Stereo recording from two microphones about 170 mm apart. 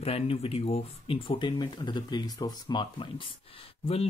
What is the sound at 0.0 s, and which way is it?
Speech, 35° left (ahead or behind).